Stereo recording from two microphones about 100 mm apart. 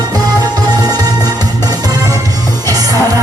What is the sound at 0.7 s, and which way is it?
Music, 40° right (ahead or behind).